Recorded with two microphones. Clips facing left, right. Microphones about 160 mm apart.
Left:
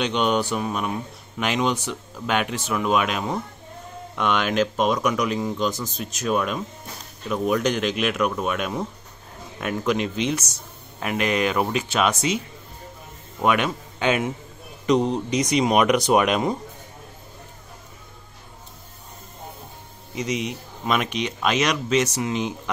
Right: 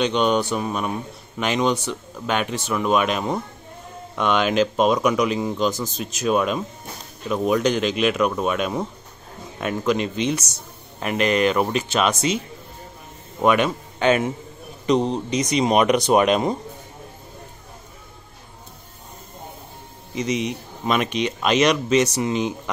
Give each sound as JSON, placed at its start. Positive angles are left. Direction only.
{"t": 0.0, "sound": "speech", "side_deg": 5}
{"t": 13.4, "sound": "a man's voice", "side_deg": 0}
{"t": 14.9, "sound": "speech", "side_deg": -20}
{"t": 15.3, "sound": "speech", "side_deg": 10}
{"t": 15.7, "sound": "speech", "side_deg": -30}
{"t": 20.2, "sound": "speech", "side_deg": 5}